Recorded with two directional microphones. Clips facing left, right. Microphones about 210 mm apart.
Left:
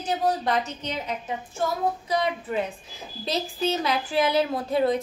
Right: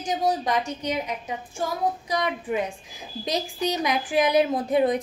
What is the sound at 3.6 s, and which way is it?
A woman's voice, 15° right (ahead or behind).